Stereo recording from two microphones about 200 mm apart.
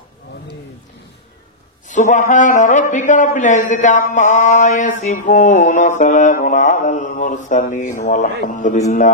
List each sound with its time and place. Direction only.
1.9 s a man's voice: 40° left (ahead or behind)